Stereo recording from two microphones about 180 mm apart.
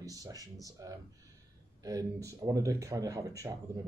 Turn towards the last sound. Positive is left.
turn(degrees=-20)  # may be behind; listen again after turning